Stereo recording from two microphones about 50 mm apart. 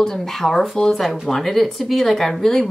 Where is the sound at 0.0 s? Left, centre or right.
Centre.